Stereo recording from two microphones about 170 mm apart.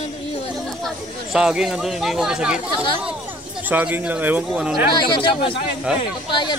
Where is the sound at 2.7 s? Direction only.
30° left (ahead or behind).